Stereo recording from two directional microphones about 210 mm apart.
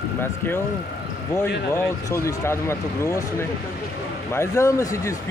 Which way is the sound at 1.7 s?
10° left (ahead or behind).